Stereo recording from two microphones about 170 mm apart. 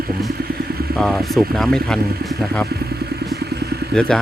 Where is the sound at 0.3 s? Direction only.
65° right (ahead or behind).